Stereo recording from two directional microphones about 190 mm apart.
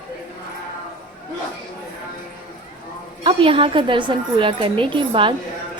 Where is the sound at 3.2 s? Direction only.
30° right (ahead or behind).